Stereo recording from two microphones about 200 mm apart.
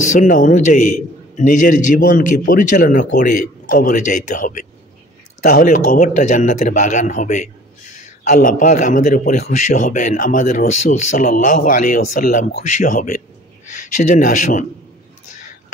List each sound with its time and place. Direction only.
0.1 s a man's voice: 40° left (ahead or behind)
2.0 s a man's voice: 45° left (ahead or behind)